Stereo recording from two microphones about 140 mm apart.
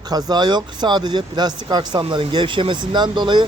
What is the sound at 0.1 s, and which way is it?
Speech, 25° right (ahead or behind).